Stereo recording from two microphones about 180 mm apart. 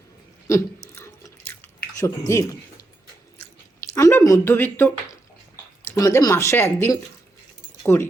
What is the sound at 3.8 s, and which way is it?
Speech, 15° left (ahead or behind).